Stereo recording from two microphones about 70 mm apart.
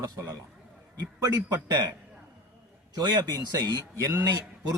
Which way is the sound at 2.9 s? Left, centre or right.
Right.